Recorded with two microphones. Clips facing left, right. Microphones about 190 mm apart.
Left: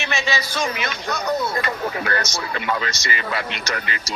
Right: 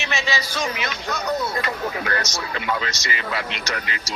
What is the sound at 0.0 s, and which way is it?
Speech, 50° left (ahead or behind).